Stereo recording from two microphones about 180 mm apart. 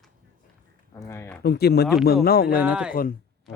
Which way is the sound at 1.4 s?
60° left (ahead or behind).